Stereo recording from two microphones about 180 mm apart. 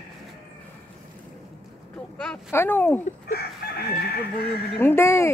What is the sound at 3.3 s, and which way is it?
Chicken, 60° left (ahead or behind).